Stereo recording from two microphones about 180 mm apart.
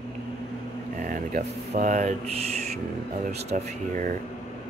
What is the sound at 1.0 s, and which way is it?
Speech, 50° right (ahead or behind).